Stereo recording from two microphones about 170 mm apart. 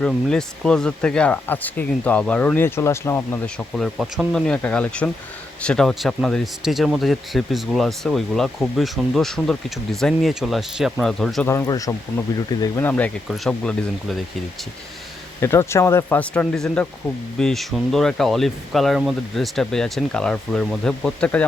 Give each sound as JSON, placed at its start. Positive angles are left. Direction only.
{"t": 0.0, "sound": "speech", "side_deg": 5}
{"t": 11.4, "sound": "speech", "side_deg": 20}
{"t": 12.8, "sound": "speech", "side_deg": 5}
{"t": 15.4, "sound": "speech", "side_deg": 15}